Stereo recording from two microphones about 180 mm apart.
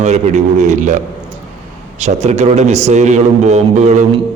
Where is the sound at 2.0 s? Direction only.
40° right (ahead or behind).